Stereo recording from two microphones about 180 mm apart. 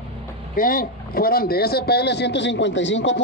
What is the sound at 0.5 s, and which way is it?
A man's voice, 50° left (ahead or behind).